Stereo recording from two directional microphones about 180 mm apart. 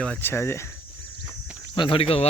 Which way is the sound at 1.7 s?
30° left (ahead or behind).